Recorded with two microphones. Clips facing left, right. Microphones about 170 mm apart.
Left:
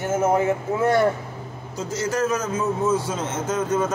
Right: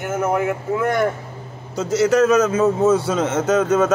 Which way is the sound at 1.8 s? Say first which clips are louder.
Right 8 dB; 75° right (ahead or behind).